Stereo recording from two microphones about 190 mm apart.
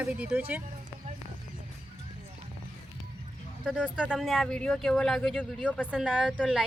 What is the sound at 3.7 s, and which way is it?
A woman's voice, 5° right (ahead or behind).